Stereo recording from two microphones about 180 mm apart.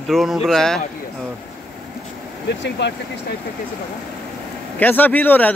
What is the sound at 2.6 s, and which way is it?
Speech, 75° left (ahead or behind).